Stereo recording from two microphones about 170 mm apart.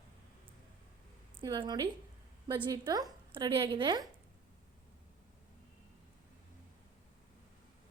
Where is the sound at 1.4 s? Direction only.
30° right (ahead or behind).